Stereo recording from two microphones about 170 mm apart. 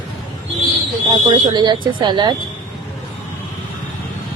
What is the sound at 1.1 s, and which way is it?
Speech, 25° right (ahead or behind).